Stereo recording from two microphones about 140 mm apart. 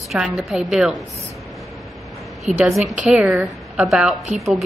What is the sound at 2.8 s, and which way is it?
Speech, 60° right (ahead or behind).